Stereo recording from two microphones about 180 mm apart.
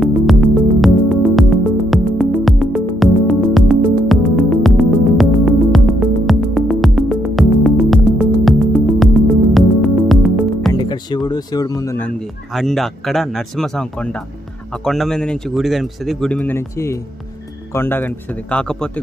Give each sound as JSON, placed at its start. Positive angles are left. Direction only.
{"t": 0.3, "sound": "music", "side_deg": 0}
{"t": 10.7, "sound": "music", "side_deg": 25}
{"t": 12.5, "sound": "speech", "side_deg": 0}